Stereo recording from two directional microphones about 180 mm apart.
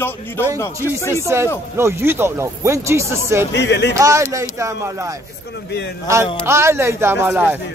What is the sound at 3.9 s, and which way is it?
Speech, 15° right (ahead or behind).